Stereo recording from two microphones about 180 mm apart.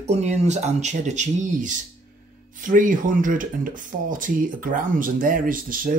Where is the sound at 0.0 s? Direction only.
40° right (ahead or behind).